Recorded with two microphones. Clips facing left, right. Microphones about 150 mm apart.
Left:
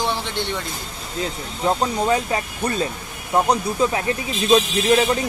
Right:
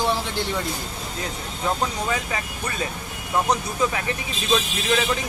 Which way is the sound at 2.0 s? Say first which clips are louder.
Left 6 dB; 35° left (ahead or behind).